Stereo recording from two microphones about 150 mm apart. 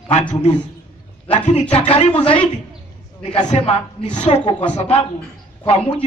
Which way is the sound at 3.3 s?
50° left (ahead or behind).